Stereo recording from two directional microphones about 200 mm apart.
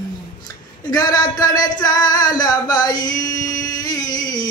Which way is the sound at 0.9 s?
20° left (ahead or behind).